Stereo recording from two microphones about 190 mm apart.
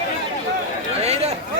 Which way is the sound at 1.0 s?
35° right (ahead or behind).